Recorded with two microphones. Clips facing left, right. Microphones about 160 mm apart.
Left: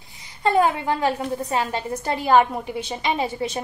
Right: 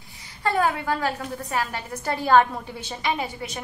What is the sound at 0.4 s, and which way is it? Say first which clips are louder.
A woman's voice: left 4 dB; 20° left (ahead or behind).